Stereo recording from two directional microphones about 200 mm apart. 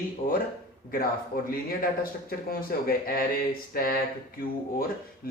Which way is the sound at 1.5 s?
45° left (ahead or behind).